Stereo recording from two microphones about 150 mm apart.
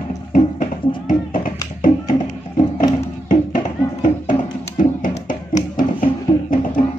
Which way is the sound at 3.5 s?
60° left (ahead or behind).